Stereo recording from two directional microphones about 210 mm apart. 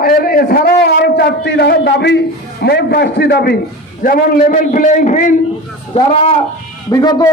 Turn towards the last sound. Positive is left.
turn(degrees=20)  # may be behind; listen again after turning